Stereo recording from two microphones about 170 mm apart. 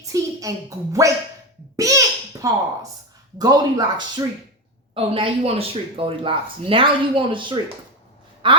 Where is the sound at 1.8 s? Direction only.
20° right (ahead or behind).